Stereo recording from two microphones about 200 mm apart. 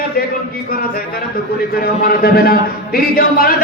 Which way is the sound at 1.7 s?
50° left (ahead or behind).